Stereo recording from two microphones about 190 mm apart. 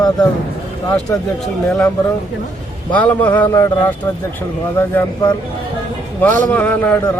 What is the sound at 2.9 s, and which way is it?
Speech, 5° left (ahead or behind).